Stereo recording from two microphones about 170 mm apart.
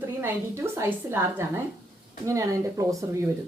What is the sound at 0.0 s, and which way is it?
Speech, 15° right (ahead or behind).